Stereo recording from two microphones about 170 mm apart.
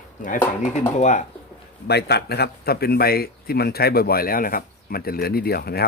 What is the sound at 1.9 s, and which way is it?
A man's voice, 70° left (ahead or behind).